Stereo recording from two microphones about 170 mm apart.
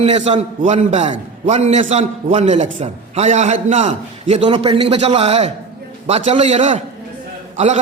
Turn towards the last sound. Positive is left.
turn(degrees=-40)  # may be behind; listen again after turning